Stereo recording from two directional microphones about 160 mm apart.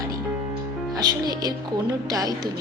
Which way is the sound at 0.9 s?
25° right (ahead or behind).